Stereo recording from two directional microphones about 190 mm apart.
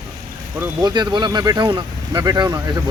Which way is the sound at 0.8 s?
20° right (ahead or behind).